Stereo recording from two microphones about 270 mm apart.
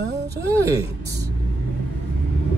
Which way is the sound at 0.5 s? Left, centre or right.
Centre.